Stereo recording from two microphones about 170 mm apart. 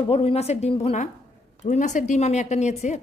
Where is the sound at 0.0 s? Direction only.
35° left (ahead or behind).